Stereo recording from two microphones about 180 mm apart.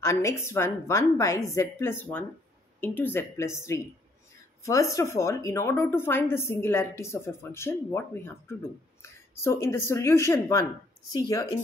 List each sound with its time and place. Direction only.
0.0 s a woman's voice: 15° left (ahead or behind)